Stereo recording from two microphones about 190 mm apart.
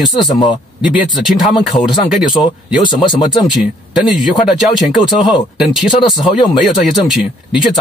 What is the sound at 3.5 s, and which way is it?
Speech, centre (ahead or behind).